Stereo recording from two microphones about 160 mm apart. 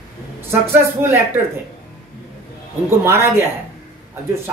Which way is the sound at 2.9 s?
15° right (ahead or behind).